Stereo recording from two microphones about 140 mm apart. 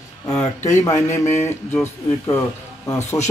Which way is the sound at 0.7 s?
20° left (ahead or behind).